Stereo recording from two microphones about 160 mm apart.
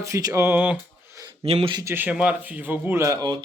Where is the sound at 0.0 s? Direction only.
20° right (ahead or behind).